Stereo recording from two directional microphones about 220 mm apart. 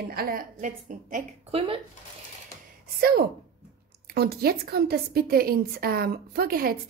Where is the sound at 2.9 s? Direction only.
45° right (ahead or behind).